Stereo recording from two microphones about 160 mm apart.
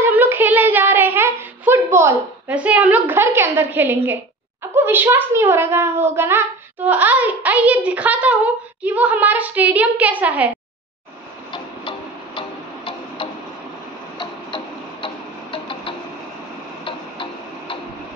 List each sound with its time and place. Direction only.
0.0 s child singing: 15° right (ahead or behind)
4.7 s a child's voice: 15° right (ahead or behind)
12.4 s tick-tock: 30° left (ahead or behind)
14.1 s music: 30° left (ahead or behind)